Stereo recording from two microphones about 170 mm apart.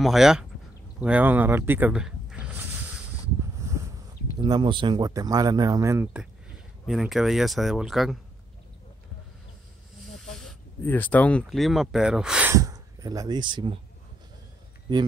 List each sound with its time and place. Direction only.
0.0 s speech: centre (ahead or behind)
1.0 s a sound: 10° right (ahead or behind)
4.4 s speech: 25° right (ahead or behind)
6.9 s speech: centre (ahead or behind)
10.8 s speech: 10° left (ahead or behind); by 12.5 s 5° right (ahead or behind)
12.5 s speech: 20° right (ahead or behind)